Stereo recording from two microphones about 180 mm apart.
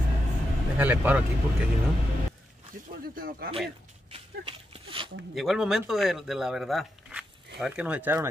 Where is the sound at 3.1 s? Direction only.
55° right (ahead or behind).